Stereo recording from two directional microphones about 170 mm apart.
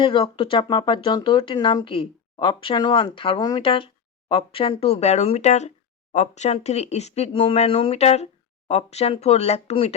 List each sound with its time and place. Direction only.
0.0 s speech: 30° left (ahead or behind)